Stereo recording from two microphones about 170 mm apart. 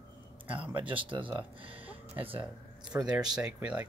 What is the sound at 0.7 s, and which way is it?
Speech, 30° right (ahead or behind).